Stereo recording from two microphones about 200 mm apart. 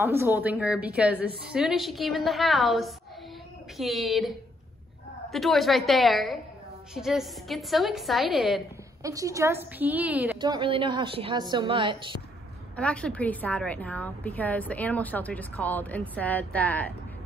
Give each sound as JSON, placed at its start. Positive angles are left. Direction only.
{"t": 0.0, "sound": "a woman's voice", "side_deg": -10}
{"t": 5.3, "sound": "a woman's voice", "side_deg": 0}
{"t": 9.0, "sound": "a woman's voice", "side_deg": -15}
{"t": 10.4, "sound": "a woman's voice", "side_deg": -25}
{"t": 12.7, "sound": "a woman's voice", "side_deg": 5}